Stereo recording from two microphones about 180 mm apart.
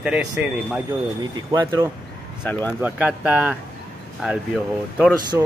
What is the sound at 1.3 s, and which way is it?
Speech, 20° right (ahead or behind).